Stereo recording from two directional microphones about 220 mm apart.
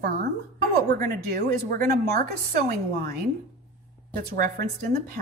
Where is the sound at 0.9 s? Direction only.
45° right (ahead or behind).